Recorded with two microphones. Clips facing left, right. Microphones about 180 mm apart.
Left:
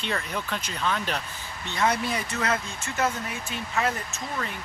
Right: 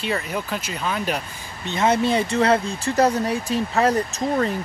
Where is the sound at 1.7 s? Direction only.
25° right (ahead or behind).